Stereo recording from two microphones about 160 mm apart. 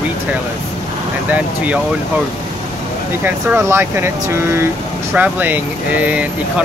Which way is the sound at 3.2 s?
15° right (ahead or behind).